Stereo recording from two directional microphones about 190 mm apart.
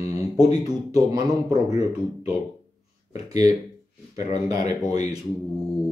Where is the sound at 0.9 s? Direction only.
20° right (ahead or behind).